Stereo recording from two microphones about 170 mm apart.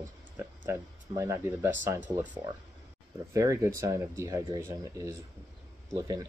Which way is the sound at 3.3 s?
20° right (ahead or behind).